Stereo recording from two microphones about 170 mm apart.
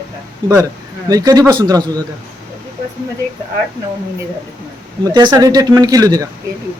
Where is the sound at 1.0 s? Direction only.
20° right (ahead or behind).